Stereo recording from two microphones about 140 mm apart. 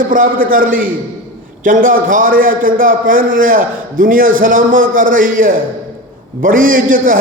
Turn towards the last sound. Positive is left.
turn(degrees=-80)